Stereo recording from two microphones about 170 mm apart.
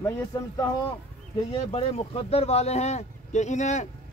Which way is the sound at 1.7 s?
35° left (ahead or behind).